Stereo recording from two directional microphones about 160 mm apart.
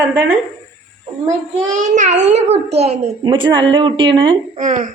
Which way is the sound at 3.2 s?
30° right (ahead or behind).